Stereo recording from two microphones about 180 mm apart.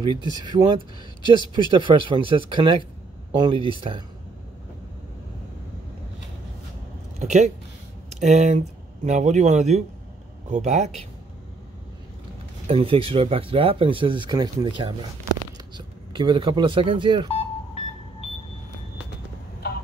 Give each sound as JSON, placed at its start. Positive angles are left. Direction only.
{"t": 0.0, "sound": "speech", "side_deg": -25}
{"t": 7.2, "sound": "speech", "side_deg": -40}
{"t": 12.6, "sound": "speech", "side_deg": -30}
{"t": 16.1, "sound": "speech", "side_deg": -25}